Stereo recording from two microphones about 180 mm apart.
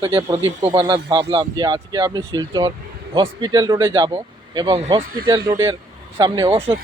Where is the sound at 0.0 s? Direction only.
30° right (ahead or behind).